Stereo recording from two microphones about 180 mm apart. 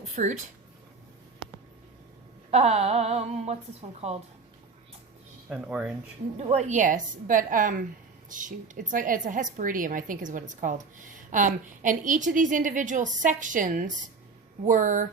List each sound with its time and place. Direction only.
0.2 s a woman's voice: 45° right (ahead or behind)
2.5 s a woman's voice: 35° right (ahead or behind)
5.5 s speech: 5° right (ahead or behind)
6.4 s a woman's voice: 40° right (ahead or behind)